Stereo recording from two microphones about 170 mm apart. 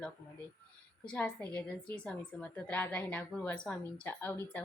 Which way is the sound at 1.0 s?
10° left (ahead or behind).